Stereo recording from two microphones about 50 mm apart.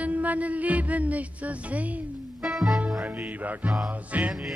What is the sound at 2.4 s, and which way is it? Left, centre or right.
Music, centre.